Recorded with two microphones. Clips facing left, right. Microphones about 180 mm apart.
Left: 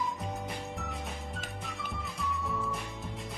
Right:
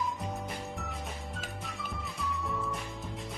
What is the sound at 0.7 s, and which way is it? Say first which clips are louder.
Music: left 1 dB; centre (ahead or behind).